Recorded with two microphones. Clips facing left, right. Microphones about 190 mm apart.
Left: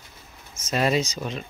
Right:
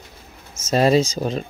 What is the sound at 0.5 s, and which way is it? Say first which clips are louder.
Speech: right 7 dB; 40° right (ahead or behind).